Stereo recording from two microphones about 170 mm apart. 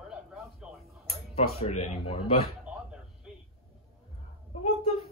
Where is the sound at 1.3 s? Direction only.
40° left (ahead or behind).